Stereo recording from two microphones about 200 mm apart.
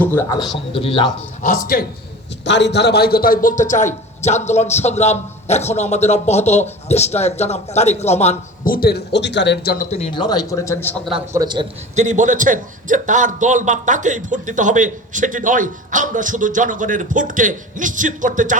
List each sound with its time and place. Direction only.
0.0 s speech: 10° left (ahead or behind)
1.4 s speech: 40° left (ahead or behind)
2.4 s a man's voice: 60° left (ahead or behind)
9.7 s speech: 30° left (ahead or behind); by 10.9 s 15° left (ahead or behind)
11.3 s a man's voice: 20° right (ahead or behind)
11.9 s a man's voice: 35° right (ahead or behind)